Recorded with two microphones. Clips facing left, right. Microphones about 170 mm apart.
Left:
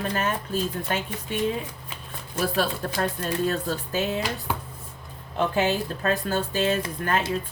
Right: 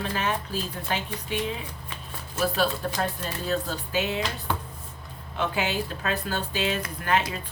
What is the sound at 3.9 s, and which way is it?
Speech, 50° left (ahead or behind).